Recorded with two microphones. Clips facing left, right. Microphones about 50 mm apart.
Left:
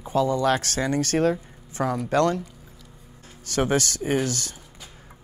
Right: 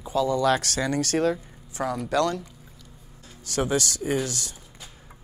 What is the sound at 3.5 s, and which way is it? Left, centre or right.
Speech, left.